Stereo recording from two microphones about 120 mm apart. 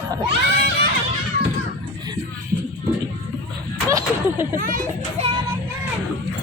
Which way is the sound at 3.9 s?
25° right (ahead or behind).